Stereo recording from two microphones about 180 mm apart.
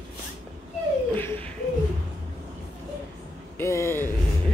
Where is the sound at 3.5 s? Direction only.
15° left (ahead or behind).